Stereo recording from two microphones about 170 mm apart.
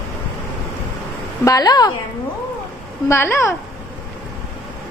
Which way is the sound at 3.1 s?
15° left (ahead or behind).